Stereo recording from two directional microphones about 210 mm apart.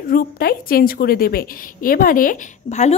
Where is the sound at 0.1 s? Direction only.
45° left (ahead or behind).